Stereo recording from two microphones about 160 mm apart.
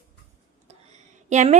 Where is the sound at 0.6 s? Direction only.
45° right (ahead or behind).